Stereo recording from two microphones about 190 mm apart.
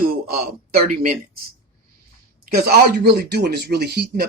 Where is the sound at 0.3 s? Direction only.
55° right (ahead or behind).